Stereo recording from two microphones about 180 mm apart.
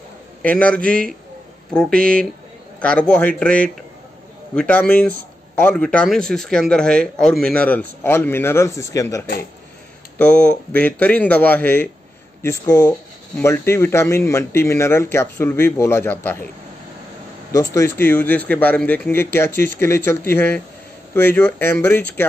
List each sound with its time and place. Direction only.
0.4 s speech: 10° left (ahead or behind)
10.1 s speech: 5° left (ahead or behind)
17.5 s speech: 20° left (ahead or behind)